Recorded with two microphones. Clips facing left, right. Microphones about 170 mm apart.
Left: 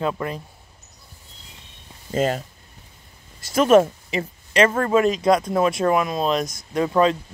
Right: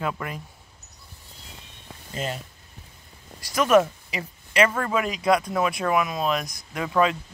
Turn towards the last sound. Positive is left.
turn(degrees=30)  # may be behind; listen again after turning